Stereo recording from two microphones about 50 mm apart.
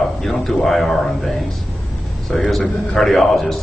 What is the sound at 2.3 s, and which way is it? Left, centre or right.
A man's voice, centre.